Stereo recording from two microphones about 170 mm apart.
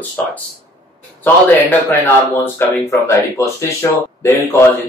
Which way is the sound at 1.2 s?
10° left (ahead or behind).